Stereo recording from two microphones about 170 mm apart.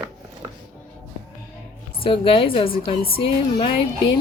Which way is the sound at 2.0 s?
30° left (ahead or behind).